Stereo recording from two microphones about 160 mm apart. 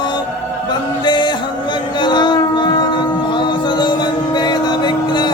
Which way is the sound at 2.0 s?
30° left (ahead or behind).